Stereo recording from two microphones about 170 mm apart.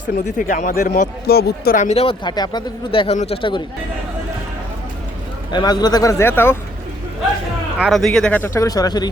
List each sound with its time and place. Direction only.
0.2 s speech: 50° left (ahead or behind)
1.3 s speech: 65° left (ahead or behind)
1.8 s speech: 40° left (ahead or behind)
5.5 s a man's voice: 25° left (ahead or behind)
7.8 s speech: centre (ahead or behind); by 9.0 s 25° left (ahead or behind)